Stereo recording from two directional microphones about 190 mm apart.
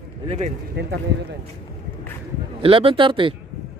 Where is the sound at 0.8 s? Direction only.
60° right (ahead or behind).